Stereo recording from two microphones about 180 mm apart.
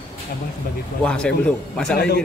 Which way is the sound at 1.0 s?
5° left (ahead or behind).